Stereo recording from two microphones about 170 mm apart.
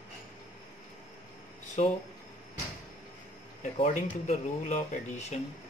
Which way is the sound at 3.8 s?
45° left (ahead or behind).